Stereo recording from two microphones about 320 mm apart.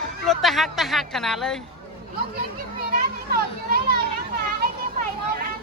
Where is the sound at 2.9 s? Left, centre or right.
Right.